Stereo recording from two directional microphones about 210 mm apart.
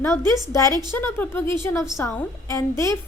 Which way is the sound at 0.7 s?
20° right (ahead or behind).